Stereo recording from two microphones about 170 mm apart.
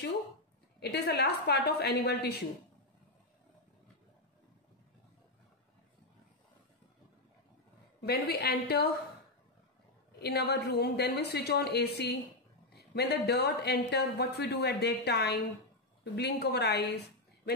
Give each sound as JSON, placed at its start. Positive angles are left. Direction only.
{"t": 0.7, "sound": "speech", "side_deg": 75}
{"t": 8.0, "sound": "speech", "side_deg": 70}
{"t": 10.2, "sound": "speech", "side_deg": 70}